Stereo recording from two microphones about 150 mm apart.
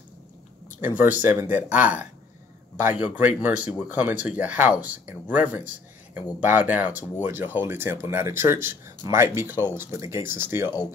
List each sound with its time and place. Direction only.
0.7 s speech: 10° right (ahead or behind)